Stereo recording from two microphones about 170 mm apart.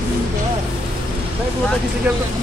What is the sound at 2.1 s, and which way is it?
Speech, 10° right (ahead or behind).